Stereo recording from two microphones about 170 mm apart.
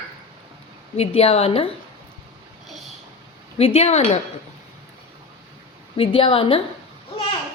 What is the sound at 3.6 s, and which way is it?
Speech, 35° left (ahead or behind).